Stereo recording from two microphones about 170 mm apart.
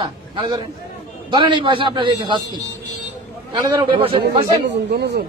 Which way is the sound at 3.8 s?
30° right (ahead or behind).